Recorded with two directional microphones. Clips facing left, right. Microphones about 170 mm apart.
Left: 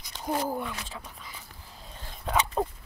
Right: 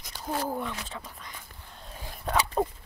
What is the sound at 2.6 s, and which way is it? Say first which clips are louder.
Pig: right 2 dB; 5° right (ahead or behind).